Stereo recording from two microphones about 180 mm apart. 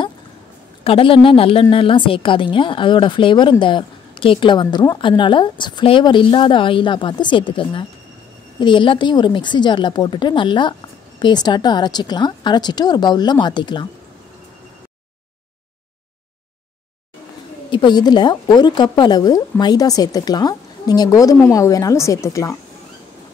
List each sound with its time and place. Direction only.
0.8 s a woman's voice: 30° left (ahead or behind)
17.6 s a woman's voice: 25° left (ahead or behind)